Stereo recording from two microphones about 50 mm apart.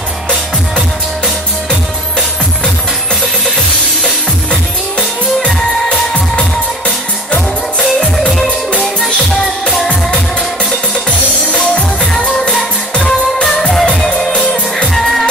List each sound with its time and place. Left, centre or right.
5.4 s music: centre
9.0 s music: centre
11.1 s music: left
12.9 s music: centre